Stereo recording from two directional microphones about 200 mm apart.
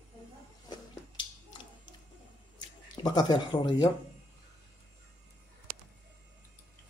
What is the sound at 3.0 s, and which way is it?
Speech, 20° left (ahead or behind).